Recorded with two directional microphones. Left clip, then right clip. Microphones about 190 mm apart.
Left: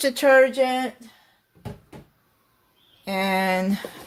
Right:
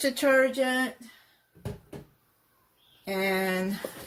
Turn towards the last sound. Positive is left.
turn(degrees=50)  # may be behind; listen again after turning